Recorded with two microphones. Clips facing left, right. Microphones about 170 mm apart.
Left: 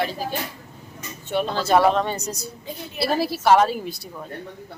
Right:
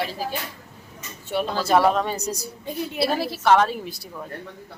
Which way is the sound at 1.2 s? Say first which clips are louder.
Left 1 dB; 5° right (ahead or behind).